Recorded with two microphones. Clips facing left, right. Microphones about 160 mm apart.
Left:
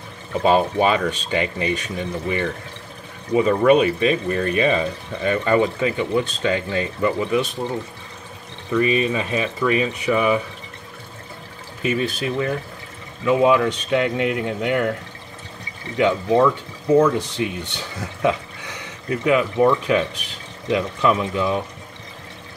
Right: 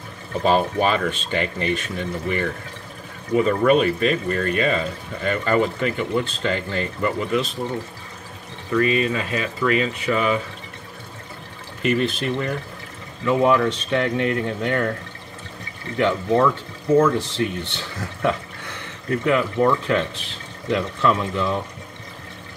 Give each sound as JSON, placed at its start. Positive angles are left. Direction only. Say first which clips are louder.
{"t": 0.4, "sound": "speech", "louder": "left 2 dB", "side_deg": 5}
{"t": 8.7, "sound": "speech", "louder": "left 1 dB", "side_deg": 15}
{"t": 11.8, "sound": "speech", "louder": "right 1 dB", "side_deg": 10}
{"t": 16.0, "sound": "speech", "louder": "left 2 dB", "side_deg": 5}